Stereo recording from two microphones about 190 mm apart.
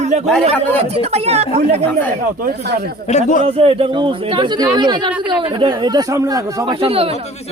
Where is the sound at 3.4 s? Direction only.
30° right (ahead or behind).